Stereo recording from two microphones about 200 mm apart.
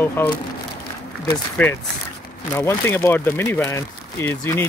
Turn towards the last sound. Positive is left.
turn(degrees=10)  # may be behind; listen again after turning